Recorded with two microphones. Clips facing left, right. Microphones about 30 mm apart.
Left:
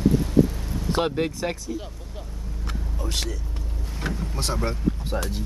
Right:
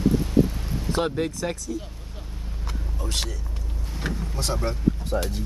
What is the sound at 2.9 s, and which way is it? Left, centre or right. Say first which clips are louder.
Vehicle: even; centre.